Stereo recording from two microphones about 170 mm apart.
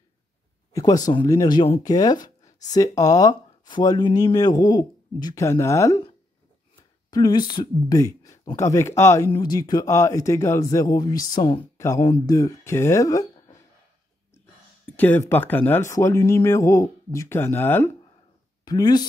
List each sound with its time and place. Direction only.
0.7 s speech: 20° left (ahead or behind)
7.1 s speech: 25° left (ahead or behind)
11.8 s speech: 20° left (ahead or behind)
15.0 s speech: 10° left (ahead or behind)
18.7 s speech: 25° left (ahead or behind)